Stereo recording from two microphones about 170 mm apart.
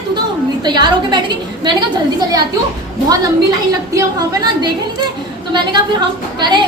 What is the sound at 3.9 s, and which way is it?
A woman's voice, 25° right (ahead or behind).